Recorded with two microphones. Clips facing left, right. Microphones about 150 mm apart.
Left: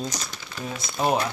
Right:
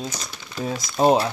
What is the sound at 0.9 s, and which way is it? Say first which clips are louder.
Speech: right 6 dB; 30° right (ahead or behind).